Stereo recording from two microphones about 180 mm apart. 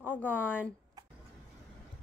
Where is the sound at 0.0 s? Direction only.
10° left (ahead or behind).